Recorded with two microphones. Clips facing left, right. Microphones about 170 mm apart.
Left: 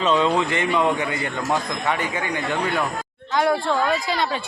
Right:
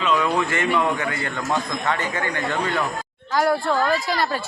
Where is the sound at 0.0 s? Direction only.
25° left (ahead or behind).